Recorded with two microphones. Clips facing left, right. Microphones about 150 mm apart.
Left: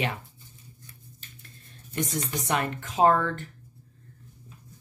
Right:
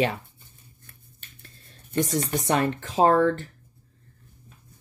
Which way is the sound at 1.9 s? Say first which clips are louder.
Right 5 dB; 35° right (ahead or behind).